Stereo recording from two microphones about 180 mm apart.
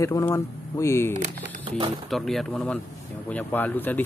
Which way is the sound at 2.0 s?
Centre (ahead or behind).